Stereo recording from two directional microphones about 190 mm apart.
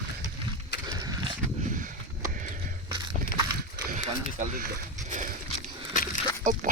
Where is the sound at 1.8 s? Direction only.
45° right (ahead or behind).